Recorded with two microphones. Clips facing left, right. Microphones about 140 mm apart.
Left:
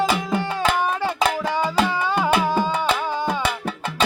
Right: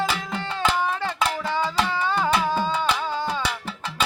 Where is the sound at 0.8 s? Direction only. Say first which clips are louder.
Left 3 dB; 15° left (ahead or behind).